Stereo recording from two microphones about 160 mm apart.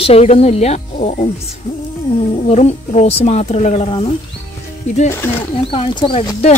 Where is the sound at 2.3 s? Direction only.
40° left (ahead or behind).